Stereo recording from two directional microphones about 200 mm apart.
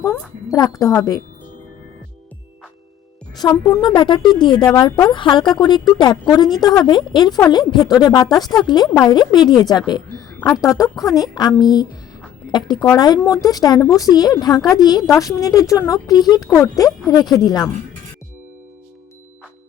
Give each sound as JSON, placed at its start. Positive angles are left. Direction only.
{"t": 0.0, "sound": "speech", "side_deg": 15}
{"t": 3.4, "sound": "a woman's voice", "side_deg": 15}